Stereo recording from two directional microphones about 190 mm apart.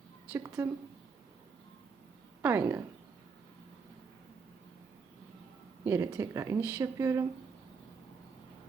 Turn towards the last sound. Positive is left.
turn(degrees=-15)  # may be behind; listen again after turning